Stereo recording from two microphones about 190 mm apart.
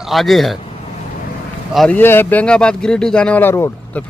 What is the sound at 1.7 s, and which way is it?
A man's voice, 5° left (ahead or behind).